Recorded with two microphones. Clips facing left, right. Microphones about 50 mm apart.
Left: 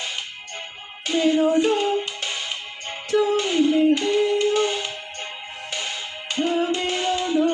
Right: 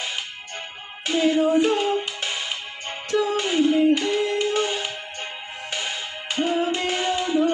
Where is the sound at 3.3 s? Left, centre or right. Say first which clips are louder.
Left 1 dB; centre.